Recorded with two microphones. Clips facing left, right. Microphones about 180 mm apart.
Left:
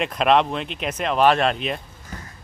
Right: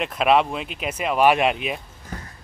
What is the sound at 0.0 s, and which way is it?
Speech, 5° right (ahead or behind).